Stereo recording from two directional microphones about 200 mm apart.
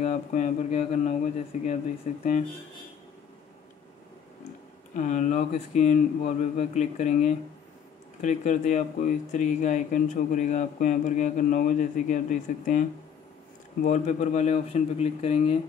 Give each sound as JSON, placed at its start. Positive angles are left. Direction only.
{"t": 0.0, "sound": "speech", "side_deg": 35}
{"t": 4.9, "sound": "speech", "side_deg": 35}
{"t": 13.8, "sound": "speech", "side_deg": 35}